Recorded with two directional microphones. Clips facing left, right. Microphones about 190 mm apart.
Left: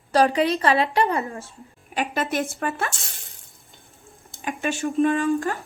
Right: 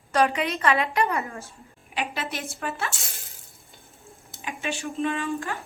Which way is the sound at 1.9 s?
45° left (ahead or behind).